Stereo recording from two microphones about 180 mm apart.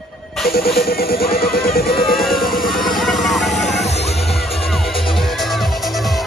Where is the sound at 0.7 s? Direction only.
55° left (ahead or behind).